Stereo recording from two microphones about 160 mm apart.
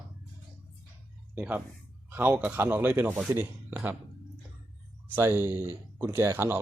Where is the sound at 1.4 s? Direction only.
10° right (ahead or behind).